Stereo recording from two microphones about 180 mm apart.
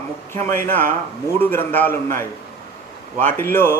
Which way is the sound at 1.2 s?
10° left (ahead or behind).